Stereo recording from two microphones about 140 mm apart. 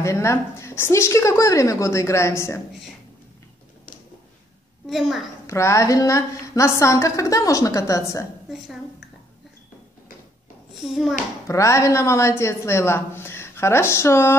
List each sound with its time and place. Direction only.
0.0 s a woman's voice: 20° left (ahead or behind)
4.8 s a child's voice: centre (ahead or behind)
5.5 s a woman's voice: 20° left (ahead or behind)
10.7 s a child's voice: centre (ahead or behind)
11.4 s a woman's voice: 20° left (ahead or behind)